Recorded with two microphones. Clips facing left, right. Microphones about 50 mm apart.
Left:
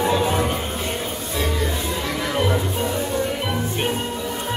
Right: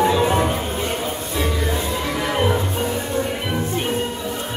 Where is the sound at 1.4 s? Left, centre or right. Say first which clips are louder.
Right 1 dB; centre.